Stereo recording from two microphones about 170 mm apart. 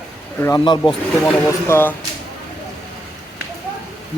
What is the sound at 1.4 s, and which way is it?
Speech, 15° left (ahead or behind).